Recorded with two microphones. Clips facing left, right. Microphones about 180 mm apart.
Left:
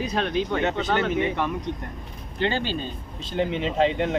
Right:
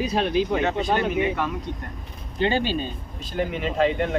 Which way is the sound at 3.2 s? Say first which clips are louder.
Left 1 dB; 25° left (ahead or behind).